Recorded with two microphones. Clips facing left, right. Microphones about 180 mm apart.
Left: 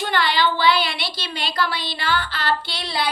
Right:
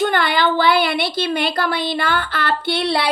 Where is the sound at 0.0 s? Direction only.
50° right (ahead or behind).